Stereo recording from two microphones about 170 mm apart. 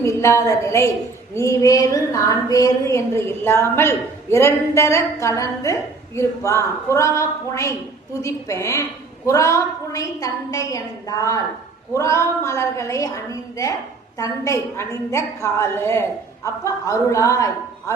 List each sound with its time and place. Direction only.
0.0 s a woman's voice: 15° left (ahead or behind)